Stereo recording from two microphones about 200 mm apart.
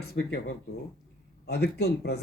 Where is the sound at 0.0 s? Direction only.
55° left (ahead or behind).